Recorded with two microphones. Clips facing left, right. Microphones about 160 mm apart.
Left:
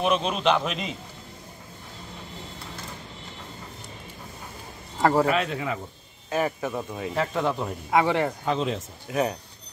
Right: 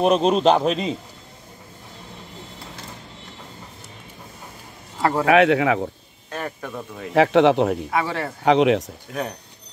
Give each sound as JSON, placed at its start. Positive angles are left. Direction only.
{"t": 0.0, "sound": "a man's voice", "side_deg": -40}
{"t": 5.2, "sound": "speech", "side_deg": -75}
{"t": 6.3, "sound": "speech", "side_deg": 5}
{"t": 7.2, "sound": "speech", "side_deg": -80}
{"t": 7.9, "sound": "speech", "side_deg": 20}
{"t": 8.5, "sound": "speech", "side_deg": -75}
{"t": 9.1, "sound": "speech", "side_deg": 5}